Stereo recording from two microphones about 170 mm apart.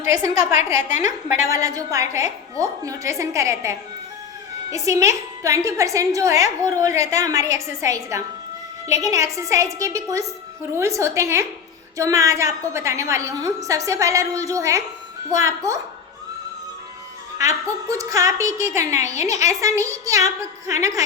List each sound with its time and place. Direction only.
0.0 s a woman's voice: 15° right (ahead or behind)
0.9 s a woman's voice: 45° left (ahead or behind)
1.3 s a woman's voice: 20° right (ahead or behind)
17.3 s a woman's voice: 20° right (ahead or behind)